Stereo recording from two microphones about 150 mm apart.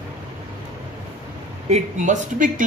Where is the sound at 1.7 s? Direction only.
50° right (ahead or behind).